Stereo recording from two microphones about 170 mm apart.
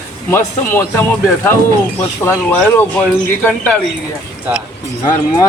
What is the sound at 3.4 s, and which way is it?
Speech, 10° left (ahead or behind).